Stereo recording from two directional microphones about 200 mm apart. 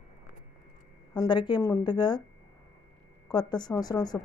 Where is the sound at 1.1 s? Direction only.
20° left (ahead or behind).